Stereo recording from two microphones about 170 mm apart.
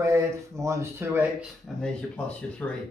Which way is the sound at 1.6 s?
5° left (ahead or behind).